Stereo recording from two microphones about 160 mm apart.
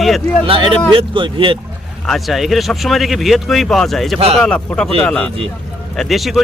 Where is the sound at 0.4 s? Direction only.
35° right (ahead or behind).